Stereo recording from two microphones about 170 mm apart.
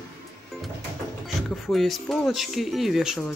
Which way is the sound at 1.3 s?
Centre (ahead or behind).